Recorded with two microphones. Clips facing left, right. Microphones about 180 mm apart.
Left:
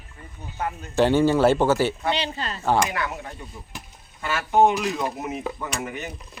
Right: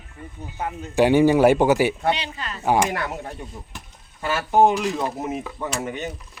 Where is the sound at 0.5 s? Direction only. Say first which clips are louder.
Right 2 dB; 15° right (ahead or behind).